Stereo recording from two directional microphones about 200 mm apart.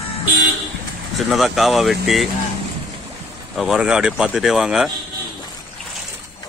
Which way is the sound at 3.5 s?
Centre (ahead or behind).